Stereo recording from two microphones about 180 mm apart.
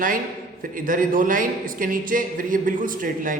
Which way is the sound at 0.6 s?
50° right (ahead or behind).